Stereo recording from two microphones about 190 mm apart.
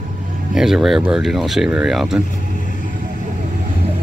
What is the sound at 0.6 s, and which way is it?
Speech, centre (ahead or behind).